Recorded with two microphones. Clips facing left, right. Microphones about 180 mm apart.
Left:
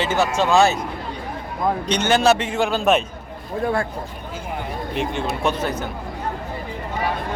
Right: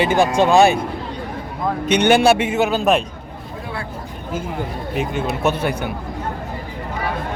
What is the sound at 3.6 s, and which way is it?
Speech, 45° left (ahead or behind).